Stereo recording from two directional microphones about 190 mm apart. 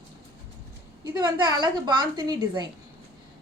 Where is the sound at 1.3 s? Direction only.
25° right (ahead or behind).